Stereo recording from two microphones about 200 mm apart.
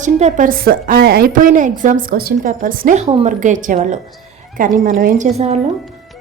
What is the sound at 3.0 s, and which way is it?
Speech, 30° right (ahead or behind).